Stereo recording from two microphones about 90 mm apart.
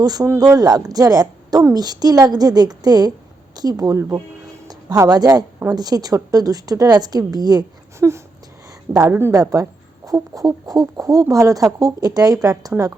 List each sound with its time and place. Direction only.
0.0 s a woman's voice: 45° right (ahead or behind)
7.9 s speech: 30° right (ahead or behind)
9.3 s speech: 40° right (ahead or behind)